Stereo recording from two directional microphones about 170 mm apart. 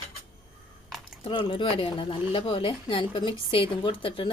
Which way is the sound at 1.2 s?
30° left (ahead or behind).